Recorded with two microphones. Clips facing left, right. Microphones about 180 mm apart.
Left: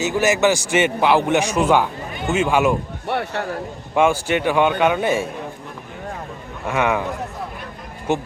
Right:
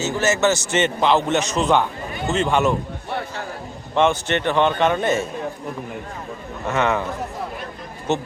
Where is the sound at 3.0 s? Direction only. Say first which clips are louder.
Left 5 dB; 65° left (ahead or behind).